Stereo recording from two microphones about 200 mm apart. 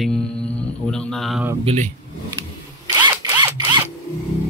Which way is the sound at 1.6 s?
30° right (ahead or behind).